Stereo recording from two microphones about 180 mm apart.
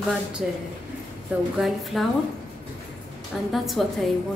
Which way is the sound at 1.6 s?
Centre (ahead or behind).